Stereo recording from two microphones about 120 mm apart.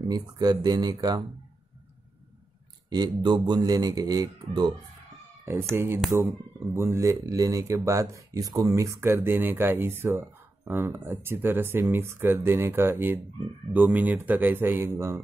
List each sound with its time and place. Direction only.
0.1 s speech: 35° right (ahead or behind)
2.9 s speech: 35° right (ahead or behind)
6.1 s speech: 20° right (ahead or behind)